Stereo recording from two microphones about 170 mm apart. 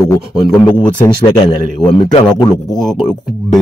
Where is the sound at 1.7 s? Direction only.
40° left (ahead or behind).